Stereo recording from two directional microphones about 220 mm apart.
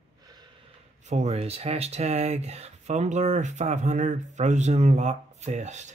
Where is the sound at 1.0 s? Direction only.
30° right (ahead or behind).